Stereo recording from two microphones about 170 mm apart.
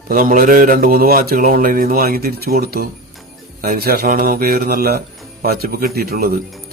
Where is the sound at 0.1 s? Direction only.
55° right (ahead or behind).